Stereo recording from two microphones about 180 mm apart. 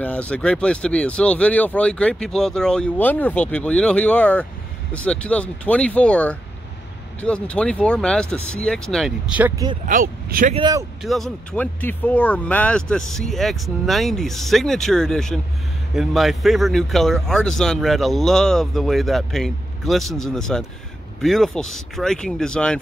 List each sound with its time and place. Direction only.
0.0 s speech: 5° left (ahead or behind)
9.8 s speech: 45° right (ahead or behind)
10.5 s speech: 25° right (ahead or behind)
11.0 s speech: centre (ahead or behind)